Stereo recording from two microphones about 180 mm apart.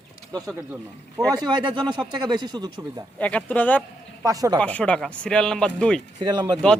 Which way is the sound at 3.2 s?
5° left (ahead or behind).